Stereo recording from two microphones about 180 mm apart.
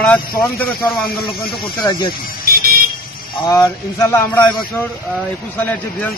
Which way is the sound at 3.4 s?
20° left (ahead or behind).